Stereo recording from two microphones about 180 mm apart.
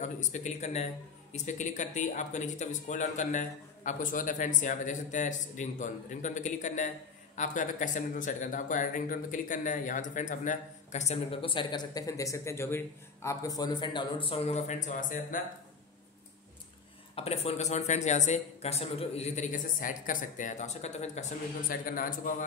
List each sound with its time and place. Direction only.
0.0 s speech: 40° left (ahead or behind)
17.1 s speech: 35° left (ahead or behind)
21.6 s speech: 50° left (ahead or behind)